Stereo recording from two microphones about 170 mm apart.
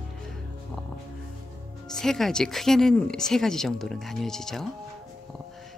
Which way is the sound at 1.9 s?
Centre (ahead or behind).